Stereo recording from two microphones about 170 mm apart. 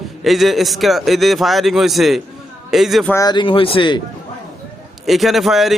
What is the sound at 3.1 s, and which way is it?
Speech, 25° left (ahead or behind).